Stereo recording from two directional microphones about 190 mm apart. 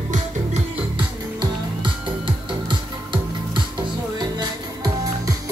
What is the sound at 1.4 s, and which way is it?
Music, 25° right (ahead or behind).